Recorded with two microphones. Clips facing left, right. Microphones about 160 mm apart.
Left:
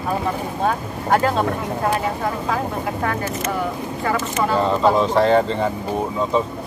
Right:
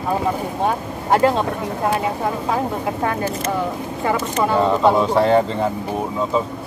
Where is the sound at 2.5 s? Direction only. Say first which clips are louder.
Right 2 dB; 25° right (ahead or behind).